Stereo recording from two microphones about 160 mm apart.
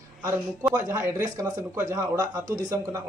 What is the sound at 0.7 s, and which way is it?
Speech, 20° right (ahead or behind).